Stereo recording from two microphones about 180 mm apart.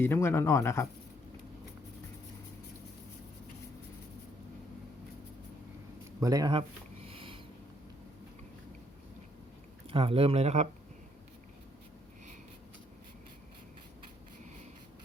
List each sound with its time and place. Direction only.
0.0 s speech: 15° left (ahead or behind)
6.1 s speech: 20° right (ahead or behind)
7.1 s a sound: 30° right (ahead or behind)
9.9 s speech: 30° right (ahead or behind)